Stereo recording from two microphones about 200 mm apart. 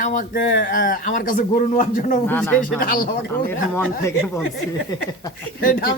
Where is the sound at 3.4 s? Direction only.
10° left (ahead or behind).